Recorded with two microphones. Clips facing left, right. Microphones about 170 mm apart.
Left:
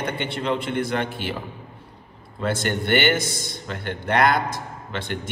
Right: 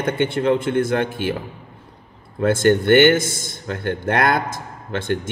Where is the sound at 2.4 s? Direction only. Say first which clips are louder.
Right 9 dB; 50° right (ahead or behind).